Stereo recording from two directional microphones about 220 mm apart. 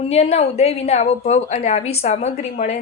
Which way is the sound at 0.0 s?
30° left (ahead or behind).